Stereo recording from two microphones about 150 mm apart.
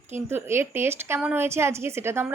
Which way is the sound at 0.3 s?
15° right (ahead or behind).